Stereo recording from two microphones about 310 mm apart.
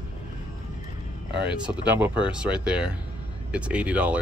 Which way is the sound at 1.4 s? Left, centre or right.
Centre.